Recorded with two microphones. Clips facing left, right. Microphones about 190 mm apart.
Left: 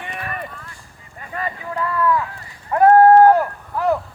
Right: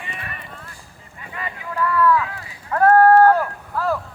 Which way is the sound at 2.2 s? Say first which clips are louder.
Even; 90° right.